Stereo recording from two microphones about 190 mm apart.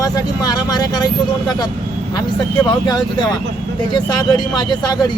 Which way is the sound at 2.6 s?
20° left (ahead or behind).